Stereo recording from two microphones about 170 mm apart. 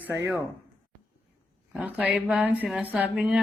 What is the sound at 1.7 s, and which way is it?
Speech, 10° right (ahead or behind).